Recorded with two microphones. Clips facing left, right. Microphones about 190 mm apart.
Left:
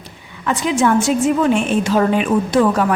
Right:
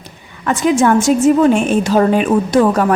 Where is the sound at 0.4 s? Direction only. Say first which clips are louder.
Right 4 dB; 45° right (ahead or behind).